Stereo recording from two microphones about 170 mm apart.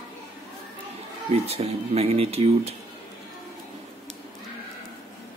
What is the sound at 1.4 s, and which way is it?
Speech, 40° right (ahead or behind).